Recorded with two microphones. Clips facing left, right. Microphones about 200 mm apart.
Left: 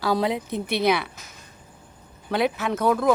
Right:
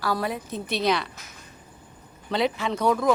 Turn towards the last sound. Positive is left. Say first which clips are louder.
# left 1 dB
turn(degrees=5)  # may be behind; listen again after turning